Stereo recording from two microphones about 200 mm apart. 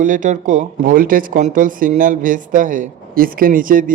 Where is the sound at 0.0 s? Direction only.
40° right (ahead or behind).